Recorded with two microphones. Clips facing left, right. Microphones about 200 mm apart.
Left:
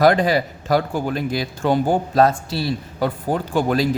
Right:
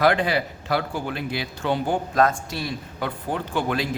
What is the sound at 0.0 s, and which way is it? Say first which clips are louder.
A man's voice: left 5 dB; 40° left (ahead or behind).